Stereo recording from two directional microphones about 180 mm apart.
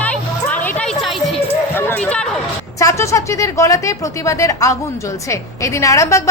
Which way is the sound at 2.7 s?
15° left (ahead or behind).